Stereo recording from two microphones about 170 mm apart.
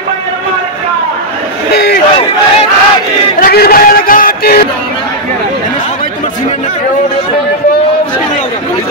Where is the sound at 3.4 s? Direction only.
60° left (ahead or behind).